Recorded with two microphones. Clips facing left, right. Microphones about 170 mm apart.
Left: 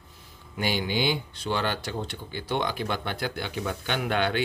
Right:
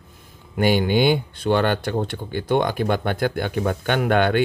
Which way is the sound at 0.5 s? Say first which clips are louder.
Right 9 dB; 55° right (ahead or behind).